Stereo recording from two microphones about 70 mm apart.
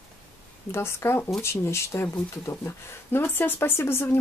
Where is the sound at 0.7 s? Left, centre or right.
Left.